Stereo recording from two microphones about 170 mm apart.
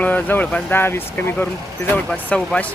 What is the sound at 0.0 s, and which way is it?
Speech, 10° left (ahead or behind).